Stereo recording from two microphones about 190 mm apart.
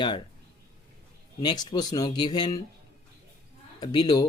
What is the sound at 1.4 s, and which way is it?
Speech, 20° left (ahead or behind).